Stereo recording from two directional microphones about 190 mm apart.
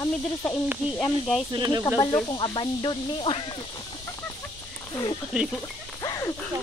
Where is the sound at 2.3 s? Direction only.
25° left (ahead or behind).